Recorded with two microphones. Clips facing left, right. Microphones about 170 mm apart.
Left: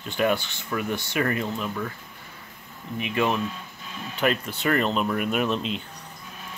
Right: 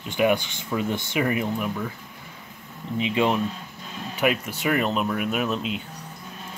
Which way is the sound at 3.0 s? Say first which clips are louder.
Right 2 dB; 20° right (ahead or behind).